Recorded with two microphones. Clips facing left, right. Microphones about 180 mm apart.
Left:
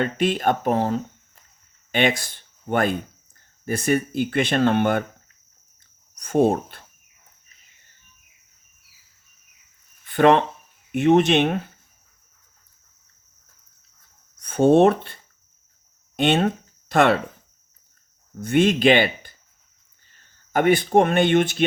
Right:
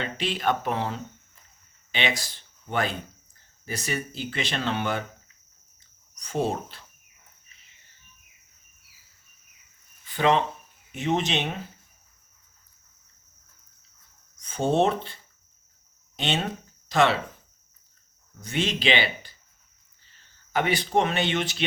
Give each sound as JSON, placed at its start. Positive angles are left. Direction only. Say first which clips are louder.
{"t": 0.0, "sound": "speech", "louder": "left 7 dB", "side_deg": 50}
{"t": 6.1, "sound": "speech", "louder": "left 9 dB", "side_deg": 55}
{"t": 10.0, "sound": "cricket", "louder": "left 6 dB", "side_deg": 55}
{"t": 10.9, "sound": "speech", "louder": "left 10 dB", "side_deg": 60}
{"t": 14.3, "sound": "speech", "louder": "left 8 dB", "side_deg": 60}
{"t": 18.3, "sound": "speech", "louder": "left 10 dB", "side_deg": 50}